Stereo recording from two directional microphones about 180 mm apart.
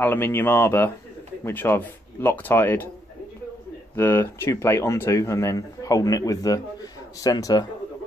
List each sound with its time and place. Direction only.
0.0 s speech: 10° left (ahead or behind)
3.9 s speech: 15° left (ahead or behind)